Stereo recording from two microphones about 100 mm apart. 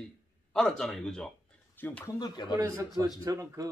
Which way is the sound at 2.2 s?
50° left (ahead or behind).